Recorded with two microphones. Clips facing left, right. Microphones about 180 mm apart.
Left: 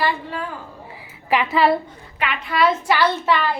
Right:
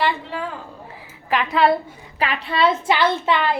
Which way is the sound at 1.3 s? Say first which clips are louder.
Even; 5° left (ahead or behind).